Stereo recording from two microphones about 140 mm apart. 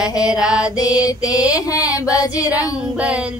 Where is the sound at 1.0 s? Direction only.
25° left (ahead or behind).